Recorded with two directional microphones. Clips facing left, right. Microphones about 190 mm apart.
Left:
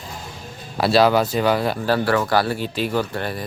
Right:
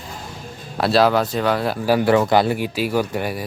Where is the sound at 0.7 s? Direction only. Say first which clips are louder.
Even; centre (ahead or behind).